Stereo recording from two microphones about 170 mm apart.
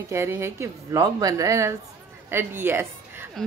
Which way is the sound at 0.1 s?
15° right (ahead or behind).